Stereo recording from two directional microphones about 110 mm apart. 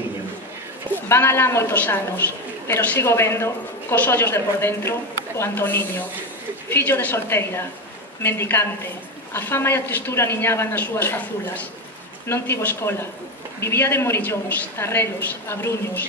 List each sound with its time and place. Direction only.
0.9 s a woman's voice: 25° left (ahead or behind)